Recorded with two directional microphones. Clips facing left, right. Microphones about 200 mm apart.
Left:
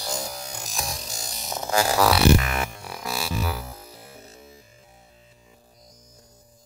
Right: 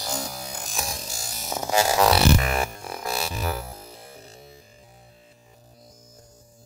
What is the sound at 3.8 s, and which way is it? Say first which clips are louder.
Music: right 1 dB; 30° right (ahead or behind).